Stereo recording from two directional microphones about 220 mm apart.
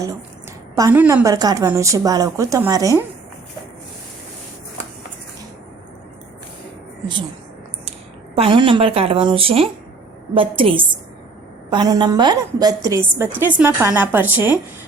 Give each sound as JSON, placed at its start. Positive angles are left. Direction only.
{"t": 0.8, "sound": "a woman's voice", "side_deg": -10}
{"t": 8.4, "sound": "a woman's voice", "side_deg": -25}